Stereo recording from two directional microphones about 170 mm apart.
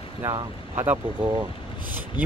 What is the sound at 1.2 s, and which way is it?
Speech, 25° right (ahead or behind).